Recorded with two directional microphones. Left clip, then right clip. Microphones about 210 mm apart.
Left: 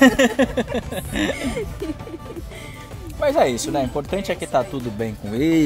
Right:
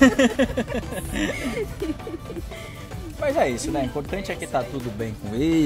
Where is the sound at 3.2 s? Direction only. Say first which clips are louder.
Left 4 dB; 35° left (ahead or behind).